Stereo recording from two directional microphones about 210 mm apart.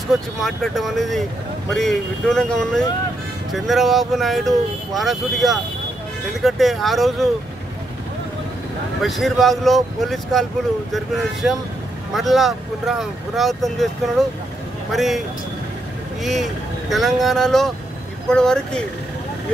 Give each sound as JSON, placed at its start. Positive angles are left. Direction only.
{"t": 0.1, "sound": "speech", "side_deg": 0}
{"t": 9.0, "sound": "speech", "side_deg": 0}
{"t": 14.9, "sound": "speech", "side_deg": 0}